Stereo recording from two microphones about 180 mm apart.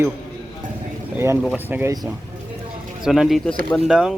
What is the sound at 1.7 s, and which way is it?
Speech, 10° right (ahead or behind).